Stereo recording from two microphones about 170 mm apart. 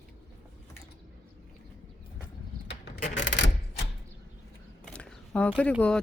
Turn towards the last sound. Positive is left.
turn(degrees=5)  # may be behind; listen again after turning